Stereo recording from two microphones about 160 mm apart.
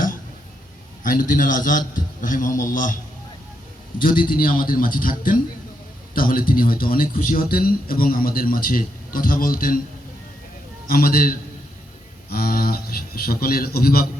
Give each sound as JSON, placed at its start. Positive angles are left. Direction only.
{"t": 1.0, "sound": "a man's voice", "side_deg": 60}
{"t": 4.0, "sound": "a man's voice", "side_deg": 60}
{"t": 10.8, "sound": "a man's voice", "side_deg": 65}